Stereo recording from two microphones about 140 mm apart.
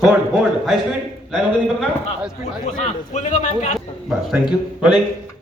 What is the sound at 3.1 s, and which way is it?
Speech, 60° left (ahead or behind).